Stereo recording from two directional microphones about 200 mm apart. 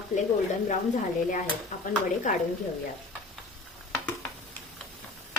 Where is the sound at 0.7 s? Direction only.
40° left (ahead or behind).